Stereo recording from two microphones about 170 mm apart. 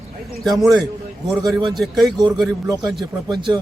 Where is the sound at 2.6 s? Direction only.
20° right (ahead or behind).